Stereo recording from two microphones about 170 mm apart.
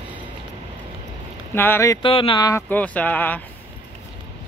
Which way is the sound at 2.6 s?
10° left (ahead or behind).